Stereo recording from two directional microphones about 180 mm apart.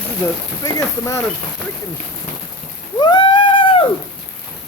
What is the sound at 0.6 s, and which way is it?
Speech, 20° left (ahead or behind).